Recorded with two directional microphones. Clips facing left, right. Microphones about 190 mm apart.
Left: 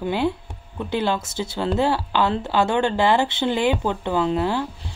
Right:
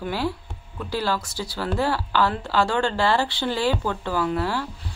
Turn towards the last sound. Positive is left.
turn(degrees=20)  # may be behind; listen again after turning